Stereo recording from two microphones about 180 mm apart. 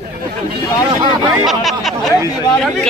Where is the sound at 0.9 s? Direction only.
30° right (ahead or behind).